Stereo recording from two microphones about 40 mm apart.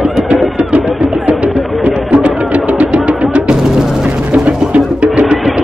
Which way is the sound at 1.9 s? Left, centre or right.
Right.